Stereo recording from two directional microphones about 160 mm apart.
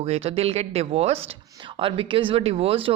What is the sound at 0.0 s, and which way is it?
Speech, 40° right (ahead or behind).